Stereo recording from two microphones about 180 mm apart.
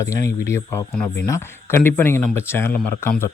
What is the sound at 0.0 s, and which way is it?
Speech, 15° left (ahead or behind).